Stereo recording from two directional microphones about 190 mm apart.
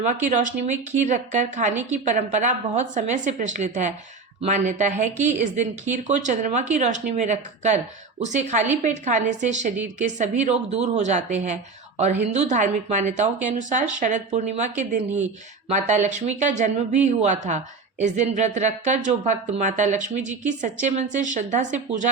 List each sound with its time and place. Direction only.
0.0 s a woman's voice: 40° right (ahead or behind)